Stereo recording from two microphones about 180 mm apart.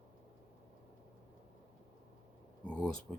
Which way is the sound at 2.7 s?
5° left (ahead or behind).